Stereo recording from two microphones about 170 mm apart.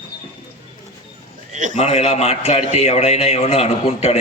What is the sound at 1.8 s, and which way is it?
A man's voice, 40° left (ahead or behind).